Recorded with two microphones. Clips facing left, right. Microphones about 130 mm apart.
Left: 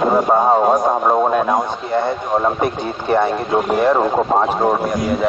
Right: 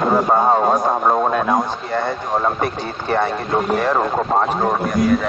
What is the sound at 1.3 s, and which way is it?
Speech, 40° left (ahead or behind).